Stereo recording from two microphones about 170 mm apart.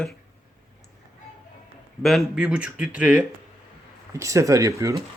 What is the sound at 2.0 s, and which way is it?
Speech, centre (ahead or behind).